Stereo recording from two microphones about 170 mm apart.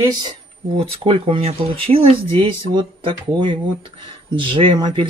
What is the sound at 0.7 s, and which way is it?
Speech, 35° right (ahead or behind).